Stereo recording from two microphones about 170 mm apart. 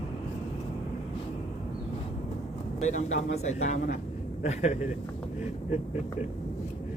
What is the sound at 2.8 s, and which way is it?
Speech, 45° left (ahead or behind).